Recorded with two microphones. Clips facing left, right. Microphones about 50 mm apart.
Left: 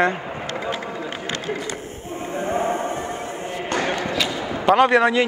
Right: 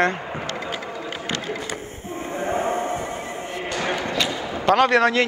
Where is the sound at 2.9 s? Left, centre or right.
Left.